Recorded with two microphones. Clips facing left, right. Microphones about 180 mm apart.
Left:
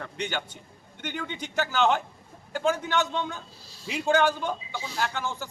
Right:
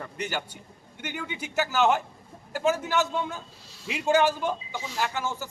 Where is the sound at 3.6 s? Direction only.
35° left (ahead or behind).